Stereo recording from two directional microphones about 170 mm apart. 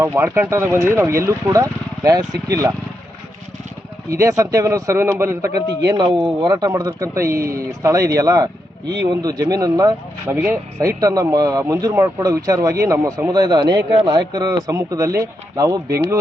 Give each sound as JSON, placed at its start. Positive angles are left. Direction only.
{"t": 0.0, "sound": "speech", "side_deg": -15}
{"t": 4.1, "sound": "speech", "side_deg": -20}